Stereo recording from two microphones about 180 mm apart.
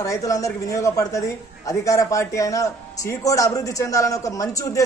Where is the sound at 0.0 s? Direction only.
20° left (ahead or behind).